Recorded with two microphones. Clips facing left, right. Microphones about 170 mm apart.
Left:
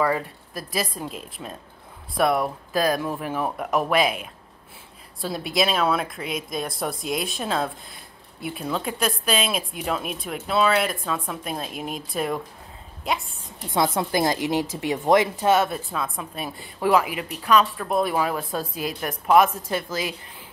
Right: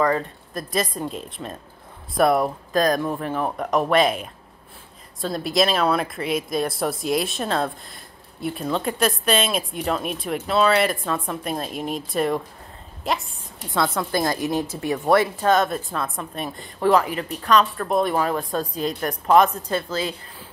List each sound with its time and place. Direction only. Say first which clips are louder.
0.0 s speech: right 2 dB; 5° left (ahead or behind)
13.6 s a woman's voice: left 1 dB; 20° left (ahead or behind)